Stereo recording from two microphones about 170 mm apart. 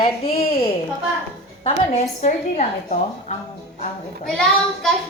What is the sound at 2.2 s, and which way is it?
A woman's voice, 45° left (ahead or behind).